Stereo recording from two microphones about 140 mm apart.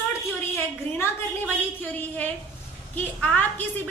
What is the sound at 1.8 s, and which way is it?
A woman's voice, 10° left (ahead or behind).